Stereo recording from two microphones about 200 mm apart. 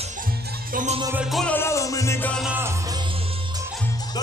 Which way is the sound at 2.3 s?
5° right (ahead or behind).